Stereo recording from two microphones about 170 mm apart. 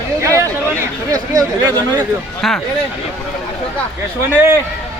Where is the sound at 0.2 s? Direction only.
20° right (ahead or behind).